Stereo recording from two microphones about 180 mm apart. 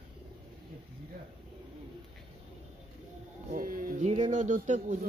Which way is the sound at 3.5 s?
50° right (ahead or behind).